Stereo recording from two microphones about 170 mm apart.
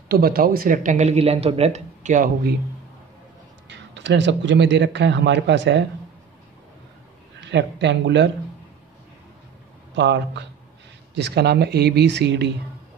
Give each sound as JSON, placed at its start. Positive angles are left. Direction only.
{"t": 0.1, "sound": "speech", "side_deg": -65}
{"t": 3.6, "sound": "speech", "side_deg": -90}
{"t": 7.3, "sound": "speech", "side_deg": -90}
{"t": 9.9, "sound": "speech", "side_deg": -90}
{"t": 11.1, "sound": "speech", "side_deg": -75}